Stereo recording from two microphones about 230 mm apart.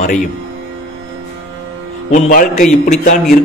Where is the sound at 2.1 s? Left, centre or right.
Left.